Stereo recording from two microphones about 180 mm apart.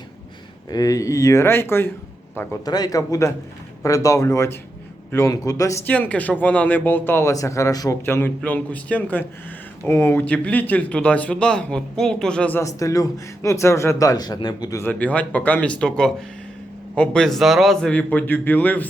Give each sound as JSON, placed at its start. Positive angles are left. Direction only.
{"t": 0.7, "sound": "a man's voice", "side_deg": 20}
{"t": 2.6, "sound": "speech", "side_deg": 20}